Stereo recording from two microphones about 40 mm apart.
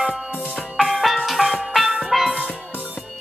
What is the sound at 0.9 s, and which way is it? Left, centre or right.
Music, centre.